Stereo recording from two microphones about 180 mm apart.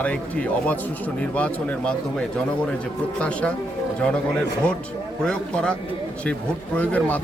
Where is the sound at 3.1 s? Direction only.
5° left (ahead or behind).